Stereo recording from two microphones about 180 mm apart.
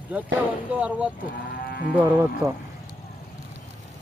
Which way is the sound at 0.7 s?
5° right (ahead or behind).